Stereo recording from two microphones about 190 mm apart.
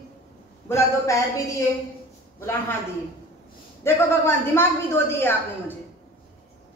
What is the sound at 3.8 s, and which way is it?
A woman's voice, 10° left (ahead or behind).